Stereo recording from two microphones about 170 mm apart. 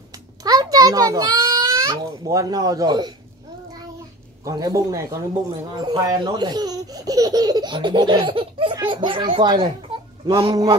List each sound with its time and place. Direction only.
0.4 s a child's voice: 20° right (ahead or behind)
4.5 s speech: 20° right (ahead or behind)